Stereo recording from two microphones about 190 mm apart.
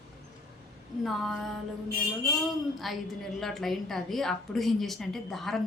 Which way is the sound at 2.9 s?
Centre (ahead or behind).